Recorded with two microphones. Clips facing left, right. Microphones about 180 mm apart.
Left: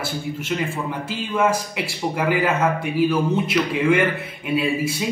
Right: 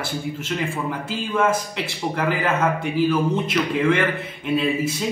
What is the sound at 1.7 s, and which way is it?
A man's voice, 5° left (ahead or behind).